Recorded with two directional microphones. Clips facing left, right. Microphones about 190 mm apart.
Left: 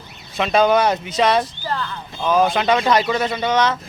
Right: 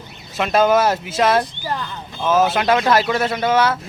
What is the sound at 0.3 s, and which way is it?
Speech, 5° right (ahead or behind).